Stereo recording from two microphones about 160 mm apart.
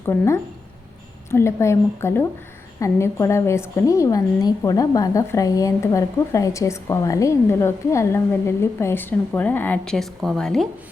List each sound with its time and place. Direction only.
0.0 s a woman's voice: 15° left (ahead or behind)